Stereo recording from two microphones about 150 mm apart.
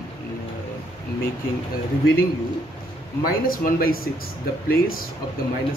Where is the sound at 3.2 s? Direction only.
80° left.